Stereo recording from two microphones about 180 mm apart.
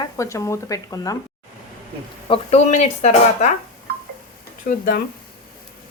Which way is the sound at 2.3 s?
40° left (ahead or behind).